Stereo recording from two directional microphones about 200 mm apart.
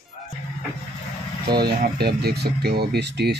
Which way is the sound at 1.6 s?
55° right (ahead or behind).